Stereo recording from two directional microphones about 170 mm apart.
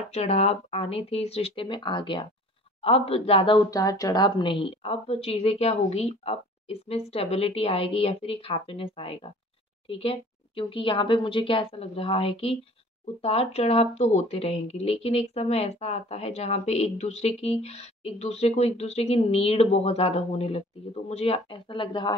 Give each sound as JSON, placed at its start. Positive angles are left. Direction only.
{"t": 0.1, "sound": "speech", "side_deg": 35}